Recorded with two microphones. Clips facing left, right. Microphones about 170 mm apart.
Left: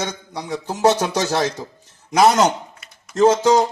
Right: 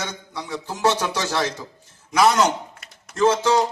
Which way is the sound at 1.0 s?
40° left (ahead or behind).